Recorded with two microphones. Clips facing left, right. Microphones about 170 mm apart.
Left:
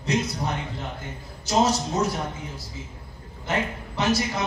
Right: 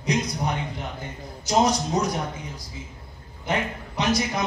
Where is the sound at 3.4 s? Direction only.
15° right (ahead or behind).